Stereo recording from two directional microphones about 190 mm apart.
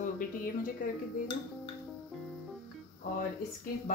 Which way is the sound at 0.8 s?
45° left (ahead or behind).